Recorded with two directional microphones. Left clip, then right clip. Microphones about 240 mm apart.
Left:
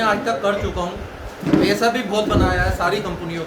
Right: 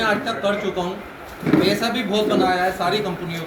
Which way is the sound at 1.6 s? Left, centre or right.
Left.